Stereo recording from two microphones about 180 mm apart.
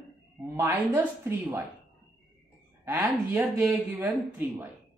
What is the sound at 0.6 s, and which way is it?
Speech, 10° right (ahead or behind).